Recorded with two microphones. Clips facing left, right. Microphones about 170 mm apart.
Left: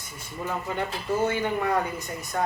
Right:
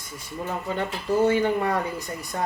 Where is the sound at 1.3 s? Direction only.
30° right (ahead or behind).